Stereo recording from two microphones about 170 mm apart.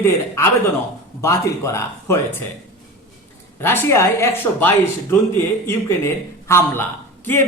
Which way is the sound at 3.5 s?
15° left (ahead or behind).